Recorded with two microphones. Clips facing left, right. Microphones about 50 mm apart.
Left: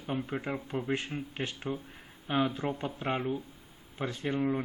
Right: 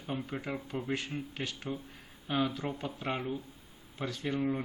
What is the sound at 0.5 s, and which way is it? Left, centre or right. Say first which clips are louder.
Speech: left 2 dB; centre.